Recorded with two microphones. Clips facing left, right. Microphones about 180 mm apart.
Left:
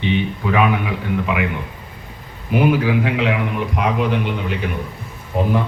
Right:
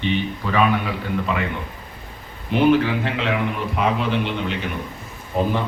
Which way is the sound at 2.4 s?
5° left (ahead or behind).